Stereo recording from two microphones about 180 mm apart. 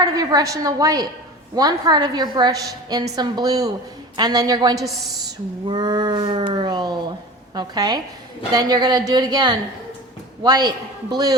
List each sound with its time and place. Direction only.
0.0 s a woman's voice: 20° right (ahead or behind)